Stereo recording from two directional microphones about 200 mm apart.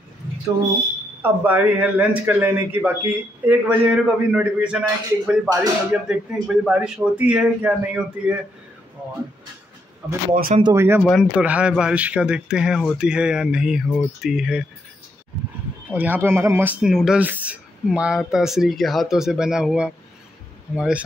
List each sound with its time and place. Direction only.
1.2 s a man's voice: 10° right (ahead or behind)
10.3 s speech: 45° right (ahead or behind)
10.6 s a man's voice: 15° right (ahead or behind)
11.1 s speech: 5° right (ahead or behind)
15.9 s speech: 10° right (ahead or behind)